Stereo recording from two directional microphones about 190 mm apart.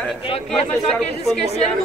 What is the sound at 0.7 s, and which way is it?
Speech, 5° left (ahead or behind).